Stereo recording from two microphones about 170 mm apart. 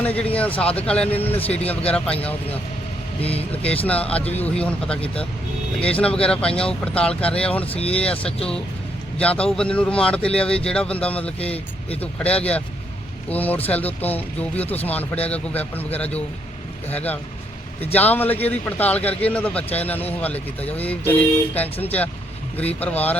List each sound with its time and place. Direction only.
0.0 s speech: 10° left (ahead or behind)
3.5 s speech: 10° left (ahead or behind)
7.6 s speech: 35° left (ahead or behind)
7.9 s speech: 5° left (ahead or behind)
9.2 s speech: 5° left (ahead or behind)